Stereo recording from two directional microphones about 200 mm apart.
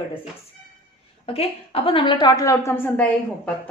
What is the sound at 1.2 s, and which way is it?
A woman's voice, 30° left (ahead or behind).